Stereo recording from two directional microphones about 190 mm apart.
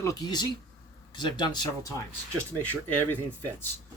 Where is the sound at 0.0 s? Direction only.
20° left (ahead or behind).